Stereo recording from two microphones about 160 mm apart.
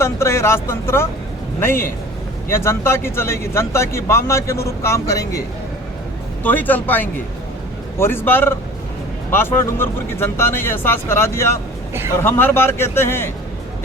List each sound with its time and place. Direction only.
0.0 s speech: 15° left (ahead or behind)
6.4 s speech: 10° left (ahead or behind)